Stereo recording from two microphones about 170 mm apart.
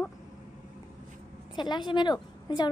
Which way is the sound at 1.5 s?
25° left (ahead or behind).